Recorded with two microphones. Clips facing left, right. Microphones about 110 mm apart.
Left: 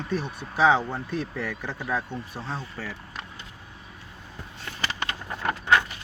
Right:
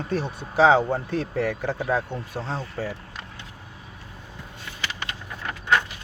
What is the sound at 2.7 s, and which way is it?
Speech, 45° right (ahead or behind).